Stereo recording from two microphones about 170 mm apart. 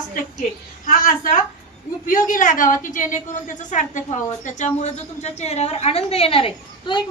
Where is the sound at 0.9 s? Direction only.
55° left (ahead or behind).